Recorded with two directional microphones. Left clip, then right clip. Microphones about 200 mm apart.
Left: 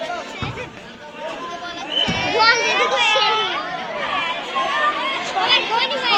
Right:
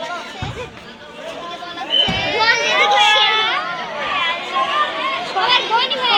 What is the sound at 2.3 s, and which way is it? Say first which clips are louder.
Children playing: left 1 dB; 50° left (ahead or behind).